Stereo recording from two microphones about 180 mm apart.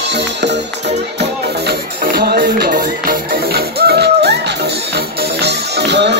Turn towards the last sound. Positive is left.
turn(degrees=-70)  # may be behind; listen again after turning